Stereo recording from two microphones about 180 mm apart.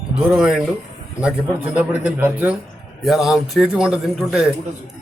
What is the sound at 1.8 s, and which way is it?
A man's voice, 10° right (ahead or behind).